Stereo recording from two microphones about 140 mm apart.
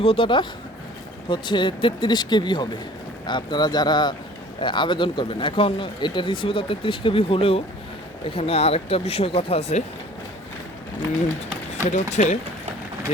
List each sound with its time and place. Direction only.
0.0 s speech: 40° left (ahead or behind)
11.8 s speech: 60° left (ahead or behind)